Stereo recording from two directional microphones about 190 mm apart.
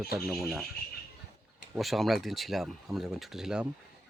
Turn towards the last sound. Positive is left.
turn(degrees=-5)  # may be behind; listen again after turning